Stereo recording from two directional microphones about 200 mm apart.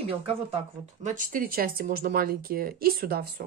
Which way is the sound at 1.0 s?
40° right (ahead or behind).